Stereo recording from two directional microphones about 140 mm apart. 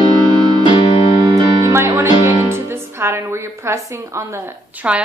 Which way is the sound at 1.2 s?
35° right (ahead or behind).